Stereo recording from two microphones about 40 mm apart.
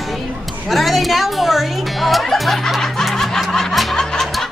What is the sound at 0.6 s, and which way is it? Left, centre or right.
Music, centre.